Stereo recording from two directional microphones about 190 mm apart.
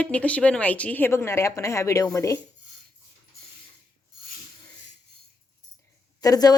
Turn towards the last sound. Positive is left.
turn(degrees=20)  # may be behind; listen again after turning